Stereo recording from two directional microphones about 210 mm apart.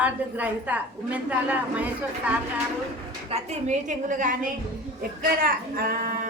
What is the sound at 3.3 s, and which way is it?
A woman's voice, 35° right (ahead or behind).